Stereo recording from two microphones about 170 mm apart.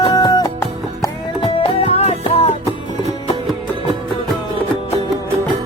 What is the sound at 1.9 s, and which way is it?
Music, 40° left (ahead or behind).